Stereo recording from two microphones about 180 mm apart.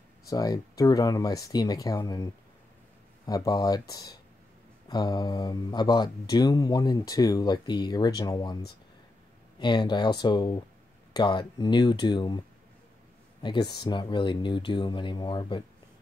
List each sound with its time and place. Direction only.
0.3 s speech: 20° left (ahead or behind)
3.3 s speech: 20° left (ahead or behind)
9.6 s speech: 25° left (ahead or behind)